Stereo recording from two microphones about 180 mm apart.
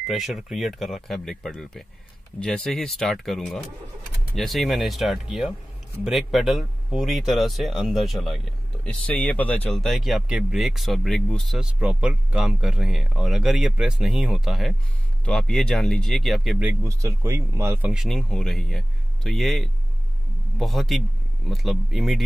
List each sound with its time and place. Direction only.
0.0 s speech: centre (ahead or behind)
16.8 s speech: 15° right (ahead or behind)
17.9 s speech: centre (ahead or behind)